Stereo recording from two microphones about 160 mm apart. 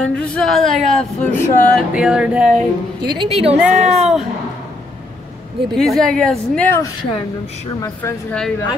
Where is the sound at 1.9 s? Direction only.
5° right (ahead or behind).